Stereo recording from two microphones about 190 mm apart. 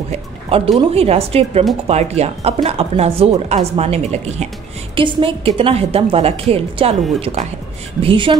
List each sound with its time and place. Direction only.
0.7 s a woman's voice: 30° right (ahead or behind)